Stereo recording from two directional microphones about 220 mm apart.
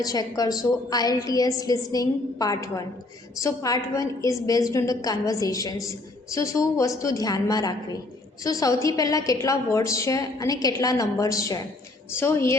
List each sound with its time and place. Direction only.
0.0 s a woman's voice: 15° left (ahead or behind)